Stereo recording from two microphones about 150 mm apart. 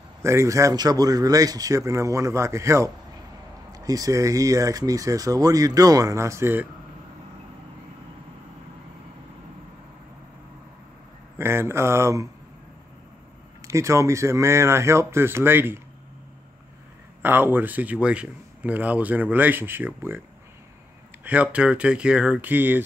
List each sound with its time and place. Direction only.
0.2 s speech: 20° right (ahead or behind)
11.3 s speech: 15° right (ahead or behind)
13.6 s speech: 20° right (ahead or behind)
17.2 s speech: 15° right (ahead or behind)
21.2 s speech: 10° right (ahead or behind)